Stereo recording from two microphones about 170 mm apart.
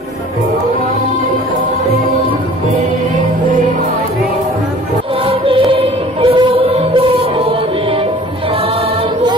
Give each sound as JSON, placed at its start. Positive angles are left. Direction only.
{"t": 5.2, "sound": "music", "side_deg": -30}